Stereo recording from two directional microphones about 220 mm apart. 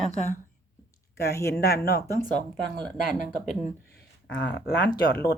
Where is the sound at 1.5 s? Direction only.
45° left (ahead or behind).